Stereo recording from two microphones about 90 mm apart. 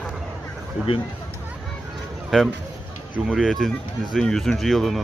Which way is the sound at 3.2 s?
5° right (ahead or behind).